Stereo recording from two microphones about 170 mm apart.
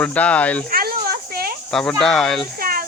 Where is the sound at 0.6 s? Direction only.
60° right (ahead or behind).